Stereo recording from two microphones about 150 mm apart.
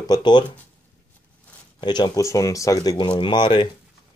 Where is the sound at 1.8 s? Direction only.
30° left (ahead or behind).